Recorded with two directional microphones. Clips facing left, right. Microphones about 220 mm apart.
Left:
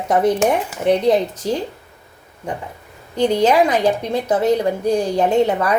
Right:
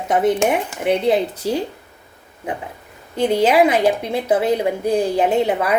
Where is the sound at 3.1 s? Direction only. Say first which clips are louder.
Even; 5° right (ahead or behind).